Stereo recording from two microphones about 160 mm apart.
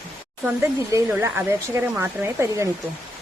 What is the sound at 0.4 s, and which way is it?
Speech, 15° right (ahead or behind).